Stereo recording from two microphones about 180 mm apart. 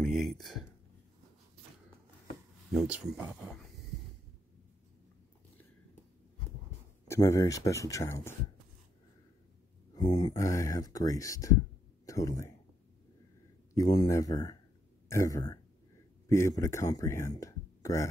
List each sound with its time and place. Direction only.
0.0 s a sound: centre (ahead or behind)
2.7 s speech: 5° right (ahead or behind)
7.1 s speech: 15° left (ahead or behind)
9.9 s speech: 25° left (ahead or behind)
13.7 s speech: 20° left (ahead or behind)